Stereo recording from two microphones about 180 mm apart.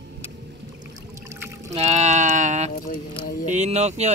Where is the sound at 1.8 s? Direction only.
40° right (ahead or behind).